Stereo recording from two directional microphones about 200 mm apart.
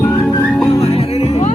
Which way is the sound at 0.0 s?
10° left (ahead or behind).